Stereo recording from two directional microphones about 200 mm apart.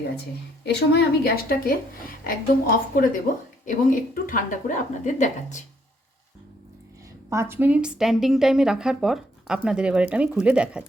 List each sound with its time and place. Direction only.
0.6 s a woman's voice: 55° left (ahead or behind); by 5.6 s 35° left (ahead or behind)
7.3 s a woman's voice: 15° right (ahead or behind)